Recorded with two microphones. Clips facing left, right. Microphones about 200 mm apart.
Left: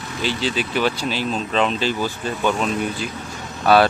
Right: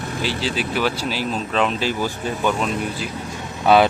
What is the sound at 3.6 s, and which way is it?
Speech, 20° right (ahead or behind).